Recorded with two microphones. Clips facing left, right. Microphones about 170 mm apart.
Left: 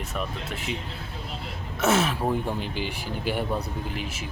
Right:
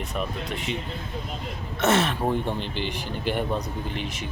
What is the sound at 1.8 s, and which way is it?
Speech, 5° left (ahead or behind).